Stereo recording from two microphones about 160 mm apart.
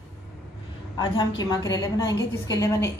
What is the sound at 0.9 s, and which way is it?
A woman's voice, 25° left (ahead or behind).